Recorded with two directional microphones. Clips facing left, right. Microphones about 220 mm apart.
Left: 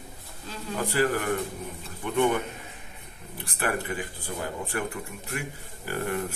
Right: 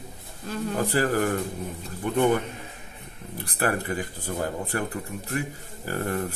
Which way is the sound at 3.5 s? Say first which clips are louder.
Right 3 dB; 40° right (ahead or behind).